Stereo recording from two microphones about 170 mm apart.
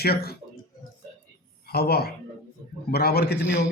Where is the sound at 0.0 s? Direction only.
65° left (ahead or behind).